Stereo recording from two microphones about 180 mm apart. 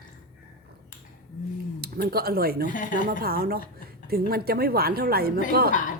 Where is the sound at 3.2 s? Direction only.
55° right (ahead or behind).